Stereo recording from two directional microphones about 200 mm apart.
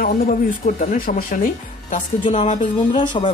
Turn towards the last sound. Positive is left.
turn(degrees=25)  # may be behind; listen again after turning